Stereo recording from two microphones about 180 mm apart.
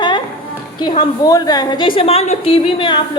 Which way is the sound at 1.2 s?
20° left (ahead or behind).